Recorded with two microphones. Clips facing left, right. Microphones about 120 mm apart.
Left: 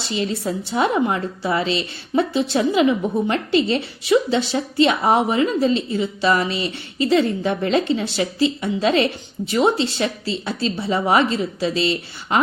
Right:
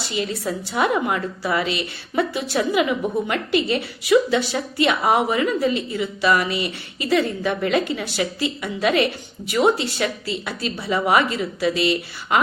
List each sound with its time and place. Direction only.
0.0 s a woman's voice: 30° left (ahead or behind)